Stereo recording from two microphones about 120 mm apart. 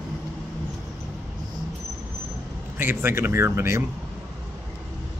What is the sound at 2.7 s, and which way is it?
A man's voice, 20° right (ahead or behind).